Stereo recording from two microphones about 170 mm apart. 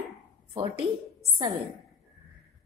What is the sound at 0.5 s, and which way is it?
Speech, 30° right (ahead or behind).